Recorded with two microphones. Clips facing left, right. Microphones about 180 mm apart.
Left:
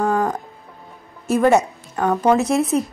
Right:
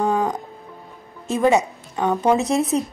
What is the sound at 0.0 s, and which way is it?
Music, 15° right (ahead or behind).